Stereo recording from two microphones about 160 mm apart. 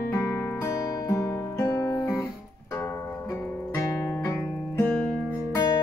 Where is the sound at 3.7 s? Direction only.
15° left (ahead or behind).